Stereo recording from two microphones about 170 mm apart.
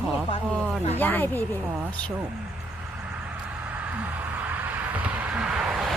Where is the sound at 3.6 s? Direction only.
10° right (ahead or behind).